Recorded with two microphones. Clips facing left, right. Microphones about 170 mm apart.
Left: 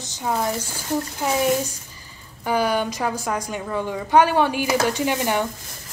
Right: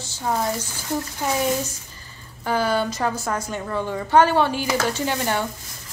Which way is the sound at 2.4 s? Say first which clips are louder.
Left 1 dB; 15° left (ahead or behind).